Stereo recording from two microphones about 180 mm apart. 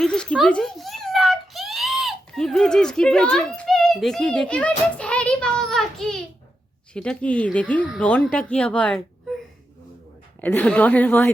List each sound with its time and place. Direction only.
0.0 s a sound: 5° left (ahead or behind)
4.9 s child singing: 5° left (ahead or behind)
6.9 s speech: 5° left (ahead or behind)
10.4 s speech: 5° left (ahead or behind)